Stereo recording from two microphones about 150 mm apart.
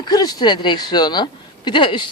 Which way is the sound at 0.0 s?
25° left (ahead or behind).